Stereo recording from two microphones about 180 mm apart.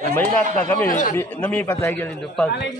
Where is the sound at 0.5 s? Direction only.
10° left (ahead or behind).